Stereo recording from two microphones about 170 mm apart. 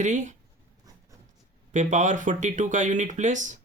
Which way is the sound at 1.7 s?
45° right (ahead or behind).